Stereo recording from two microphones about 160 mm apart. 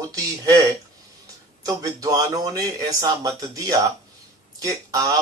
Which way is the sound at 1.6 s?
20° right (ahead or behind).